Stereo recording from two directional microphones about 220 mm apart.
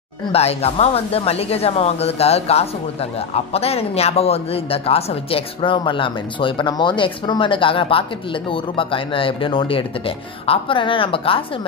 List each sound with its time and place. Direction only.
0.3 s speech: 30° left (ahead or behind)